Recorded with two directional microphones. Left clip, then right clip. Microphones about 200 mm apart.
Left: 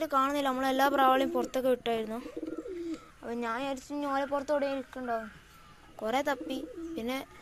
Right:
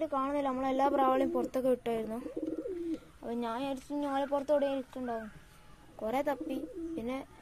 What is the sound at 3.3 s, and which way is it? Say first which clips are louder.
A woman's voice: left 2 dB; 20° right (ahead or behind).